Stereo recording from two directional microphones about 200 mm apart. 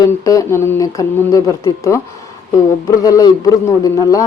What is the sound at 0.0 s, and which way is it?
A man's voice, 15° left (ahead or behind).